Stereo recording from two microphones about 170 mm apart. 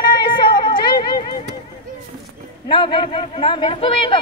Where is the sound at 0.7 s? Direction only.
25° left (ahead or behind).